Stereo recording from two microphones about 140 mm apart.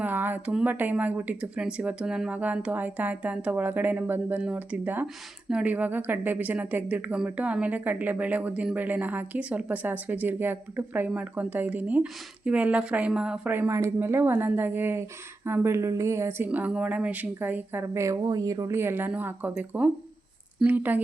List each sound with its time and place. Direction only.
0.0 s a woman's voice: 15° right (ahead or behind)